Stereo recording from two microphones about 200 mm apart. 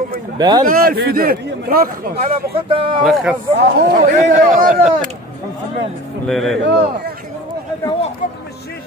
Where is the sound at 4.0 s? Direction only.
40° right (ahead or behind).